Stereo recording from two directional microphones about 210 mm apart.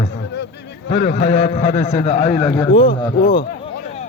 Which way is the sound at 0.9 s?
55° left (ahead or behind).